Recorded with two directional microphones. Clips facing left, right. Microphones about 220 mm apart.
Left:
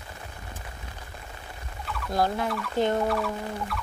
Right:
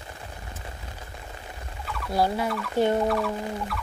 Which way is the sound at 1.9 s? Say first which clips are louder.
Right 1 dB; 5° right (ahead or behind).